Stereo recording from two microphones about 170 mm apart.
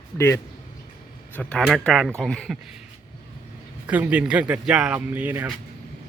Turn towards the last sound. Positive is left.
turn(degrees=-10)  # may be behind; listen again after turning